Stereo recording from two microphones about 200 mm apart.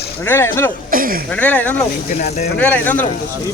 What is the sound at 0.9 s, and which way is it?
Speech, 45° right (ahead or behind).